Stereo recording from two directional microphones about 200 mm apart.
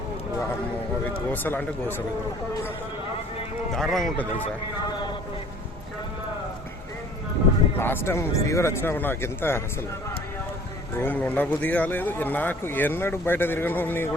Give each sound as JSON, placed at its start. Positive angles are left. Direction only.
{"t": 1.3, "sound": "speech", "side_deg": 10}
{"t": 3.8, "sound": "speech", "side_deg": 0}
{"t": 7.8, "sound": "speech", "side_deg": 10}
{"t": 11.0, "sound": "speech", "side_deg": 10}